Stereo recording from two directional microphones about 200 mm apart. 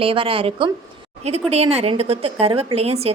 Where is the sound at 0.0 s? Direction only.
25° right (ahead or behind).